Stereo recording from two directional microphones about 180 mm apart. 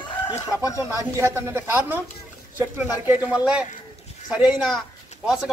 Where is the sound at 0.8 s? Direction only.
15° right (ahead or behind).